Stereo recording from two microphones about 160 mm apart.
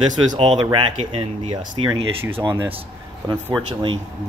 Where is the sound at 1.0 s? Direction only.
40° right (ahead or behind).